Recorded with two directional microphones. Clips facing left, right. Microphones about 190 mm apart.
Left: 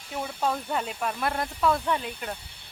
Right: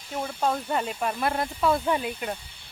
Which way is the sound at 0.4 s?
Centre (ahead or behind).